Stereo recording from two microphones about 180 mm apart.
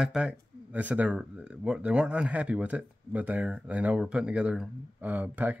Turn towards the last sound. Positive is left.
turn(degrees=-10)  # may be behind; listen again after turning